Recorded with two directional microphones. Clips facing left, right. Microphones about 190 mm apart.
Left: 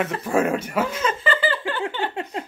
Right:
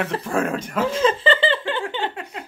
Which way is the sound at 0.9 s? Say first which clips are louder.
Right 5 dB; 30° right (ahead or behind).